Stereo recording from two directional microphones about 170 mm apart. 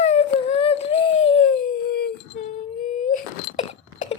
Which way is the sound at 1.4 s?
60° left (ahead or behind).